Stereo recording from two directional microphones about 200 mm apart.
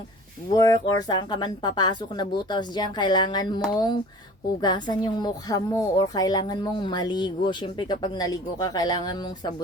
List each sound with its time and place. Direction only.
0.5 s speech: 20° left (ahead or behind)